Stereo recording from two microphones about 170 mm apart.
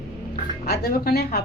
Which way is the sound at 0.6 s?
65° left (ahead or behind).